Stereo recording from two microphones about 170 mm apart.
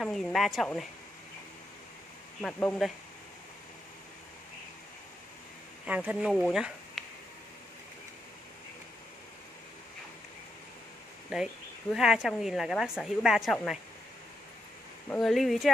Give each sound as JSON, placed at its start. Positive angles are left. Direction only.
{"t": 0.0, "sound": "a woman's voice", "side_deg": 0}
{"t": 2.4, "sound": "a woman's voice", "side_deg": 5}
{"t": 5.9, "sound": "speech", "side_deg": -5}
{"t": 6.4, "sound": "a sound", "side_deg": 0}
{"t": 11.9, "sound": "a woman's voice", "side_deg": -5}
{"t": 15.0, "sound": "a woman's voice", "side_deg": 0}